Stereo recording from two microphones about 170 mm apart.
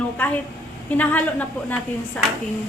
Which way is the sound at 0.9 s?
10° left (ahead or behind).